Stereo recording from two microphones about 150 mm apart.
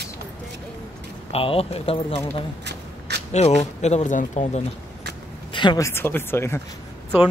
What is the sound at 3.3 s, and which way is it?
Speech, 50° left (ahead or behind).